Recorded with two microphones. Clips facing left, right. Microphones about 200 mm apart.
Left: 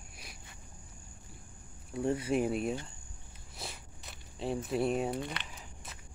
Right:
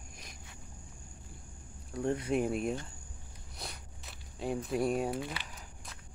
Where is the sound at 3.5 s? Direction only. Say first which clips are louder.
Left 1 dB; centre (ahead or behind).